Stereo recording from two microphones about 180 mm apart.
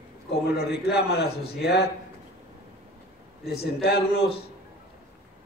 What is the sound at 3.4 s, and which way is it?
Speech, 60° left (ahead or behind).